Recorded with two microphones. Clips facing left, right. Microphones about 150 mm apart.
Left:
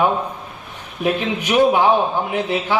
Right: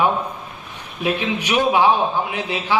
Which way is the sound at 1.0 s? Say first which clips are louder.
Left 2 dB; 45° left (ahead or behind).